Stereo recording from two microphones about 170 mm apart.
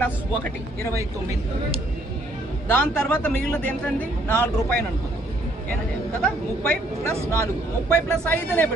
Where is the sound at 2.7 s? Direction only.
10° left (ahead or behind).